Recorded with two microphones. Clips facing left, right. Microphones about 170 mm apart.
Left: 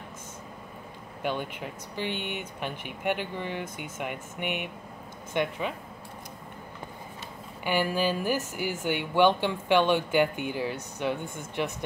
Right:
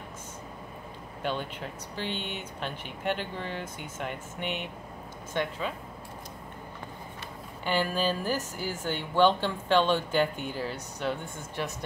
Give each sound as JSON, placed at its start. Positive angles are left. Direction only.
{"t": 1.2, "sound": "speech", "side_deg": 15}
{"t": 7.6, "sound": "speech", "side_deg": 15}